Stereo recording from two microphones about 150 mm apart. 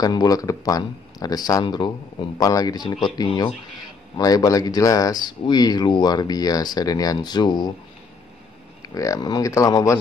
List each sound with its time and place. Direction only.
0.0 s speech: 25° left (ahead or behind)
8.8 s speech: 20° left (ahead or behind)